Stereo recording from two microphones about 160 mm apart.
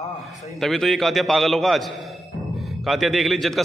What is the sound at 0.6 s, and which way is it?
A man's voice, centre (ahead or behind).